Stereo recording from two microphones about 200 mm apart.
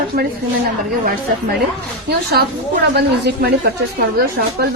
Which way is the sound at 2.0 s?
50° right (ahead or behind).